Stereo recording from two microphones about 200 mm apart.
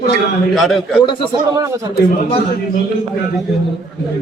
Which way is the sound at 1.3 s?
15° right (ahead or behind).